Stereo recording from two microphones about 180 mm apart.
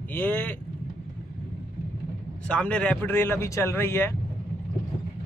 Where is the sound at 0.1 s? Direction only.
10° left (ahead or behind).